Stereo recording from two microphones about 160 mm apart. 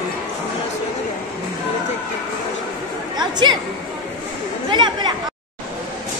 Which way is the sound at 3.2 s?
25° right (ahead or behind).